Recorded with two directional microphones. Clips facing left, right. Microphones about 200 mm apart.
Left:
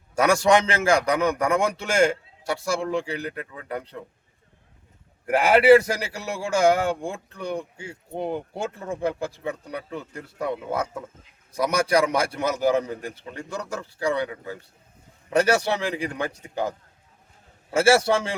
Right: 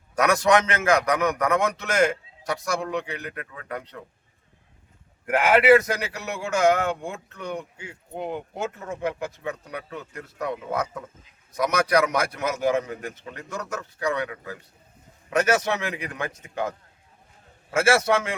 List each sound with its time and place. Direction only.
0.2 s a man's voice: 30° left (ahead or behind)
5.2 s a man's voice: 30° left (ahead or behind)